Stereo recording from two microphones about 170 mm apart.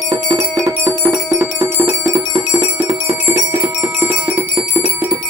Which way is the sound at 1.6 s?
20° right (ahead or behind).